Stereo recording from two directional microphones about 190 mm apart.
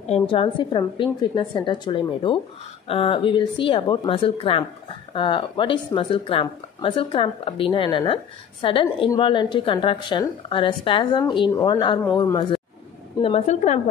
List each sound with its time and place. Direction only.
0.0 s speech: 30° left (ahead or behind)
13.2 s a woman's voice: 35° left (ahead or behind)